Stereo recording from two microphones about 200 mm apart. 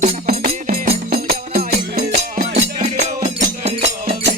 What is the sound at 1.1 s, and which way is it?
Music, 50° right (ahead or behind).